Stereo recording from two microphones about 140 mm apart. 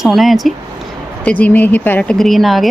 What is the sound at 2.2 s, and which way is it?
Speech, centre (ahead or behind).